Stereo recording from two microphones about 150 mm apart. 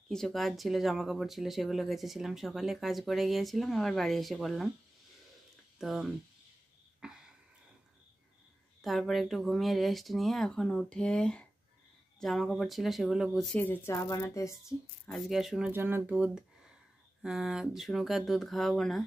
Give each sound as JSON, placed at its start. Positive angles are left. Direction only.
{"t": 0.1, "sound": "speech", "side_deg": 0}
{"t": 5.8, "sound": "speech", "side_deg": 0}
{"t": 7.0, "sound": "a sound", "side_deg": -5}
{"t": 8.8, "sound": "speech", "side_deg": 0}
{"t": 13.6, "sound": "speech", "side_deg": 15}
{"t": 15.0, "sound": "speech", "side_deg": 0}
{"t": 15.7, "sound": "speech", "side_deg": -15}